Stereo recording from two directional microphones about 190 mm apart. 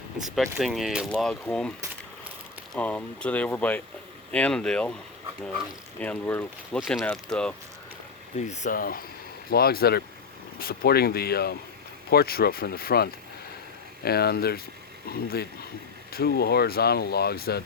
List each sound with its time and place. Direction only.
0.2 s speech: centre (ahead or behind)
2.7 s speech: 10° left (ahead or behind)
6.0 s speech: 10° left (ahead or behind)
8.4 s speech: 40° left (ahead or behind); by 17.6 s 55° left (ahead or behind)